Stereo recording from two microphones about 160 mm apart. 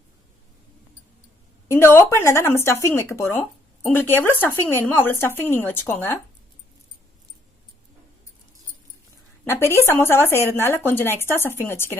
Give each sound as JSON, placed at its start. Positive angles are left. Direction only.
{"t": 1.6, "sound": "speech", "side_deg": 15}
{"t": 9.6, "sound": "speech", "side_deg": 15}